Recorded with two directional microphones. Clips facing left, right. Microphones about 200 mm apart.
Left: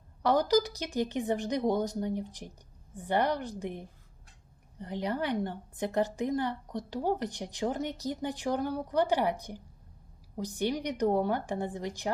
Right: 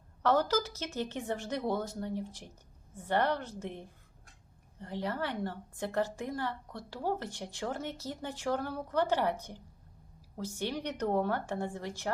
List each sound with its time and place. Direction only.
0.2 s a woman's voice: 15° left (ahead or behind)